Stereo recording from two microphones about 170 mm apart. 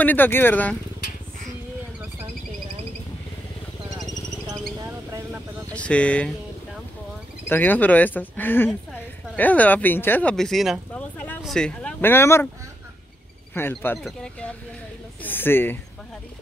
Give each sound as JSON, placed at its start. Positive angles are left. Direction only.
{"t": 0.0, "sound": "speech", "side_deg": 10}
{"t": 4.8, "sound": "bird", "side_deg": -15}
{"t": 5.7, "sound": "a sound", "side_deg": 5}
{"t": 7.4, "sound": "speech", "side_deg": 10}
{"t": 13.5, "sound": "speech", "side_deg": 10}